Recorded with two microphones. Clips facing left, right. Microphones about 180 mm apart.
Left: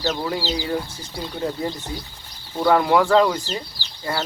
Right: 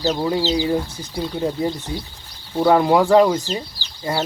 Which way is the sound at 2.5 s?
20° right (ahead or behind).